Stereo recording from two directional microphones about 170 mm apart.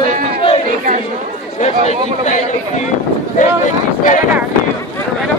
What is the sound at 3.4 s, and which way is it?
Speech, 45° left (ahead or behind).